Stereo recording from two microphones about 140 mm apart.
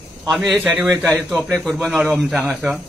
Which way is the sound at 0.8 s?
20° right (ahead or behind).